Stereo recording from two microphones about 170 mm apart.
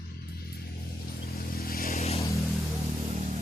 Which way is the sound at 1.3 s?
60° left (ahead or behind).